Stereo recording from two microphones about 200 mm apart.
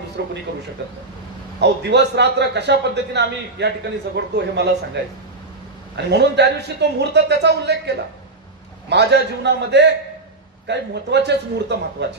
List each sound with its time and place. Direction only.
0.2 s a man's voice: 55° right (ahead or behind)
1.6 s a man's voice: 60° right (ahead or behind)
5.9 s a man's voice: 60° right (ahead or behind)